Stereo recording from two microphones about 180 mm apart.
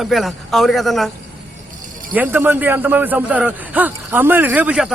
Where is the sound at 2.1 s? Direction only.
10° right (ahead or behind).